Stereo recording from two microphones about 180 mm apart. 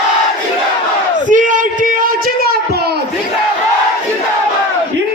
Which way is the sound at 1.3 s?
45° right (ahead or behind).